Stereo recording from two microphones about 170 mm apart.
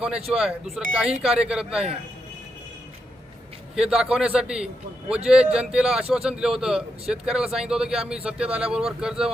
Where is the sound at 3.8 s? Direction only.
5° right (ahead or behind).